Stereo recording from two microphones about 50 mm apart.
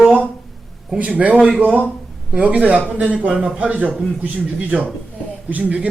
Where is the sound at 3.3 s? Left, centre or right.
Centre.